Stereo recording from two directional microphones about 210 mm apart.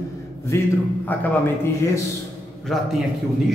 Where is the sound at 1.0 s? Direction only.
10° left (ahead or behind).